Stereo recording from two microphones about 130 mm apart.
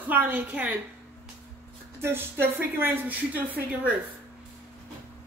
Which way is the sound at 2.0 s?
15° right (ahead or behind).